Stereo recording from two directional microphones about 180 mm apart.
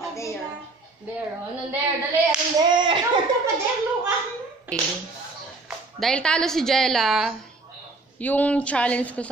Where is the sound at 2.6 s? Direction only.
25° right (ahead or behind).